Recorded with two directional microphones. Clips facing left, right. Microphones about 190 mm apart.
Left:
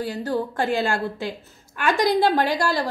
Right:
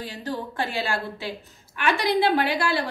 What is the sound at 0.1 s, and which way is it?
A woman's voice, 45° left (ahead or behind).